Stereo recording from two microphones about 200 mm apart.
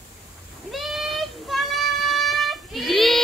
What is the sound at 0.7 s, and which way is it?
Child singing, centre (ahead or behind).